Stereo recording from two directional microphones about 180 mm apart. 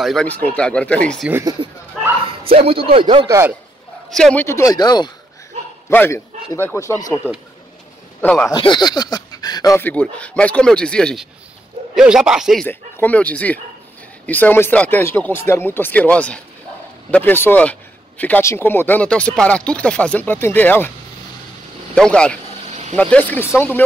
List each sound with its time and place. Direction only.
0.0 s speech: 5° left (ahead or behind)
2.4 s speech: 30° right (ahead or behind)
3.3 s a man's voice: 15° right (ahead or behind)
4.1 s speech: 5° left (ahead or behind); by 5.1 s 25° left (ahead or behind)
5.9 s speech: 15° left (ahead or behind)
8.2 s speech: 10° left (ahead or behind)
8.5 s speech: 25° left (ahead or behind); by 12.6 s centre (ahead or behind)
12.6 s speech: 10° left (ahead or behind)
21.9 s speech: 5° left (ahead or behind)